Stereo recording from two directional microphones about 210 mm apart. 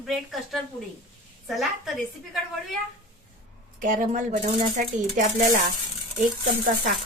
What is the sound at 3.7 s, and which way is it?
Speech, 40° right (ahead or behind).